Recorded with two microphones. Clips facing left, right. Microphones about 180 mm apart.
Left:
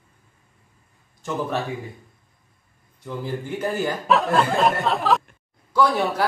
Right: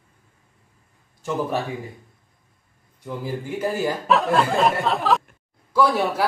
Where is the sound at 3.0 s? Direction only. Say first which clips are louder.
Even; 10° right (ahead or behind).